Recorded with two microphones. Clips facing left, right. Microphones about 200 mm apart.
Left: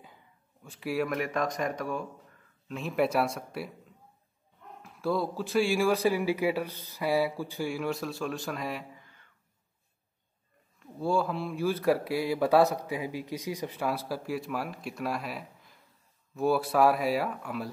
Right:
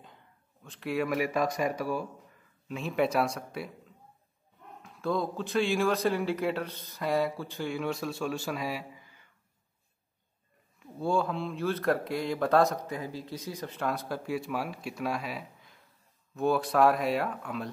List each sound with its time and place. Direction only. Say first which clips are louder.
0.7 s speech: even; 5° left (ahead or behind)
4.8 s speech: left 1 dB; 5° left (ahead or behind)
10.8 s speech: even; 5° left (ahead or behind)